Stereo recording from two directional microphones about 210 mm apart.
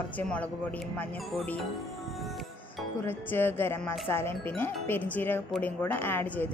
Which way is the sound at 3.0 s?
10° left (ahead or behind).